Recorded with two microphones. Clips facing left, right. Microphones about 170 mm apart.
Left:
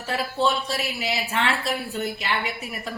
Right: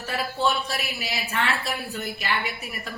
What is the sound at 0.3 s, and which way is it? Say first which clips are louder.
A woman's voice: left 2 dB; 25° left (ahead or behind).